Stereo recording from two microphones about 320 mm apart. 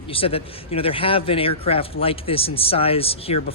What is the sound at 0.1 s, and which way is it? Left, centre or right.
Speech, centre.